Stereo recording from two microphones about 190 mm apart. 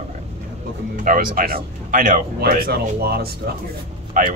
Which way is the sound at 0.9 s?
45° right (ahead or behind).